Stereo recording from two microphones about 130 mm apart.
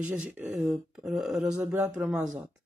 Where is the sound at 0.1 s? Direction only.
15° right (ahead or behind).